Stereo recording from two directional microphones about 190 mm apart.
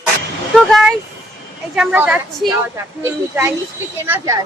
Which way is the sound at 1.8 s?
10° right (ahead or behind).